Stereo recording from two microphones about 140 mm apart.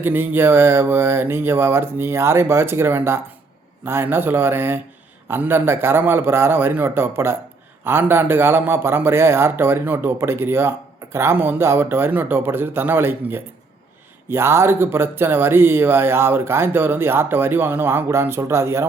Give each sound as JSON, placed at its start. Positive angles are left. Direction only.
{"t": 0.0, "sound": "speech", "side_deg": -15}